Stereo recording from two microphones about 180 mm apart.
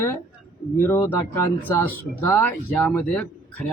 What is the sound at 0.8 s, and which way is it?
Speech, 15° left (ahead or behind).